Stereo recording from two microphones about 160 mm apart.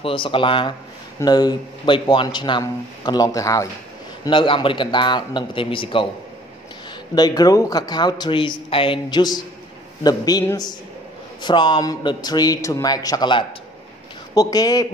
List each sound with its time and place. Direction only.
0.0 s a man's voice: 35° left (ahead or behind)
4.2 s a man's voice: 30° left (ahead or behind)
7.2 s a man's voice: 25° left (ahead or behind)